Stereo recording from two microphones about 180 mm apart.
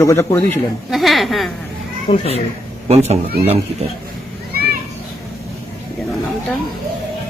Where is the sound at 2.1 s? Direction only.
35° left (ahead or behind).